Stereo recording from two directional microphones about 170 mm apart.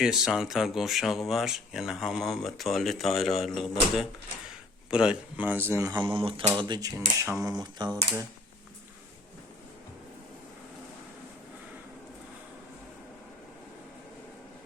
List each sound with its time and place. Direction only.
0.0 s speech: 5° right (ahead or behind); by 7.9 s 25° right (ahead or behind)